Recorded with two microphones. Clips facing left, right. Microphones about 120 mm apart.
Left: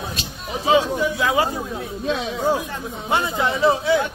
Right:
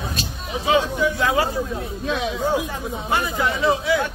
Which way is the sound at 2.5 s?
10° right (ahead or behind).